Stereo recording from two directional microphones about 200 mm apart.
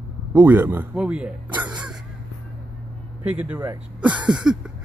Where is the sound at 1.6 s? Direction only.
5° right (ahead or behind).